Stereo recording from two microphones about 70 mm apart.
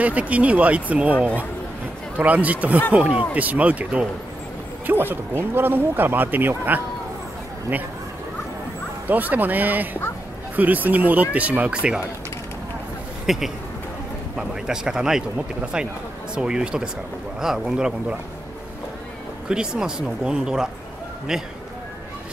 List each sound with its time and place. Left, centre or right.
0.0 s speech: right
9.0 s speech: right
13.3 s a man's voice: centre
19.5 s speech: centre